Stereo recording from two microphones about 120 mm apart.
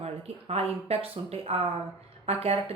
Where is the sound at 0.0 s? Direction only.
60° right (ahead or behind).